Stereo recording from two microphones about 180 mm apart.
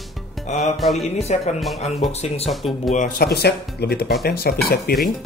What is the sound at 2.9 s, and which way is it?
Speech, 45° left (ahead or behind).